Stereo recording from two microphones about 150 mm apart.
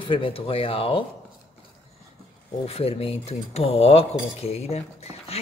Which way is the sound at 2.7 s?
40° left (ahead or behind).